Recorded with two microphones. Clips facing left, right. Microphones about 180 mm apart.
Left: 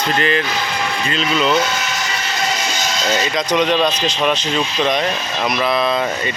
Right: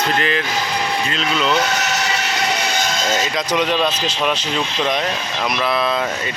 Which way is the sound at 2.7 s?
50° right (ahead or behind).